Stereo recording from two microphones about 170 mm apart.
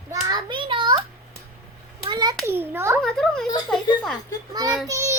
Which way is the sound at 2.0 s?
25° right (ahead or behind).